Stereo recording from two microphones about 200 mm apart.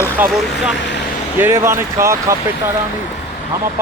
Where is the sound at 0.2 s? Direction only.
10° right (ahead or behind).